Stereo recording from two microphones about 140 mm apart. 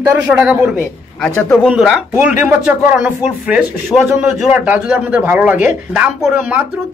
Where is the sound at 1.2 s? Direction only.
Centre (ahead or behind).